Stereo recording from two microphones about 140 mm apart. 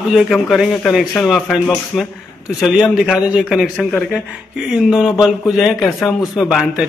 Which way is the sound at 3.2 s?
5° right (ahead or behind).